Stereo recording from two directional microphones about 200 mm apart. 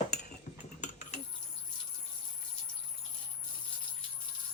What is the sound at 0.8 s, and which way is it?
Cutlery, 35° left (ahead or behind).